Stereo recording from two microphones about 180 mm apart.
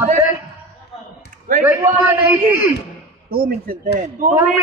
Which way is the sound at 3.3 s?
55° right (ahead or behind).